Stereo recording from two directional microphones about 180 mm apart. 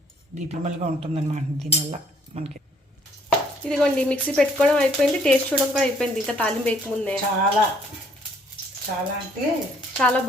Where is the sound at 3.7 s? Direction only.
5° left (ahead or behind).